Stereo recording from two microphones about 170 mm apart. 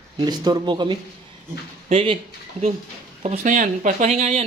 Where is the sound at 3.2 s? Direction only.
45° right (ahead or behind).